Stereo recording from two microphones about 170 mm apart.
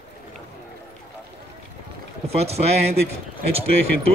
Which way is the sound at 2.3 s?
40° right (ahead or behind).